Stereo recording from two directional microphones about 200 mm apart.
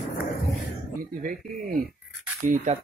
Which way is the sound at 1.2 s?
45° right (ahead or behind).